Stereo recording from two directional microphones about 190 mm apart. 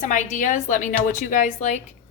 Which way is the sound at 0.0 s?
40° left (ahead or behind).